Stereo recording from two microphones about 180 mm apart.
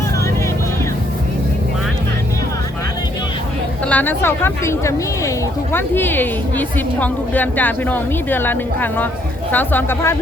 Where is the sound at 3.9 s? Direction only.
10° left (ahead or behind).